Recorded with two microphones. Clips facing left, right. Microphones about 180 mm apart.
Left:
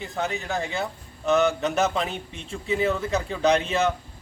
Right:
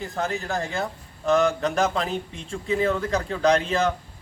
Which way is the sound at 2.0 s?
35° right (ahead or behind).